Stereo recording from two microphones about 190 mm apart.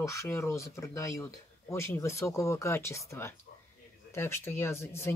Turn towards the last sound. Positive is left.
turn(degrees=15)  # may be behind; listen again after turning